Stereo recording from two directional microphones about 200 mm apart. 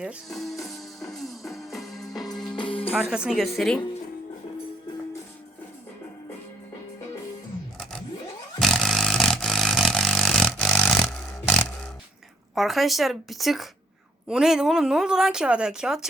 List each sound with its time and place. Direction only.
0.0 s speech: centre (ahead or behind)
0.6 s music: centre (ahead or behind)
2.0 s music: 20° left (ahead or behind)
2.2 s music: centre (ahead or behind)
2.6 s music: 25° left (ahead or behind)
2.9 s speech: 5° right (ahead or behind)
8.5 s vehicle: centre (ahead or behind)
12.5 s speech: centre (ahead or behind)